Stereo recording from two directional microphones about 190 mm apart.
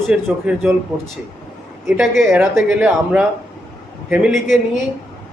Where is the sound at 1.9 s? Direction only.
Centre (ahead or behind).